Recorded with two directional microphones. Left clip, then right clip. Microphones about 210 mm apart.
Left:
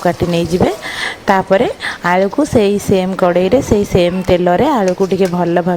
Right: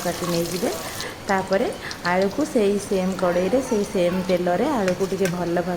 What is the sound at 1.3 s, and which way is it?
A woman's voice, 45° left (ahead or behind).